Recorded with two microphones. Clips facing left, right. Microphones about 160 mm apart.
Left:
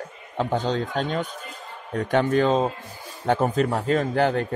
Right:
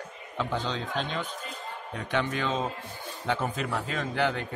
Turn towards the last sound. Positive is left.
turn(degrees=45)  # may be behind; listen again after turning